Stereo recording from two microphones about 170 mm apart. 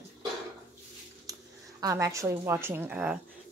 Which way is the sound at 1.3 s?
20° right (ahead or behind).